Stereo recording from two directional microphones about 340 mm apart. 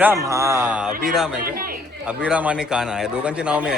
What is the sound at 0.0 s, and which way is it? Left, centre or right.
A man's voice, centre.